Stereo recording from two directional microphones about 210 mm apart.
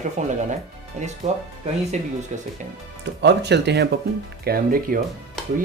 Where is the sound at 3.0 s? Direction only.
55° right (ahead or behind).